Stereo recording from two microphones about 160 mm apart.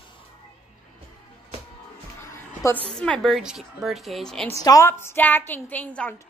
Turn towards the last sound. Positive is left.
turn(degrees=10)  # may be behind; listen again after turning